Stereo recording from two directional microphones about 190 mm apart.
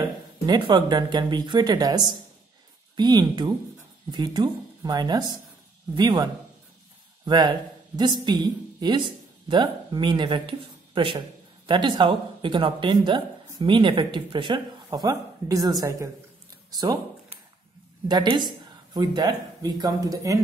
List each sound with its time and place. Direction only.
0.5 s speech: 20° right (ahead or behind)